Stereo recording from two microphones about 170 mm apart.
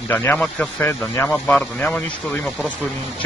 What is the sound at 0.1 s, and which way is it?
Speech, 10° left (ahead or behind).